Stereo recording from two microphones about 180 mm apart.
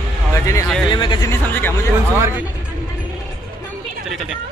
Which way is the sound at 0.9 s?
25° left (ahead or behind).